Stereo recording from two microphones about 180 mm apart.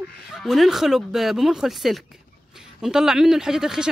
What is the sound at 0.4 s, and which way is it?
Speech, centre (ahead or behind).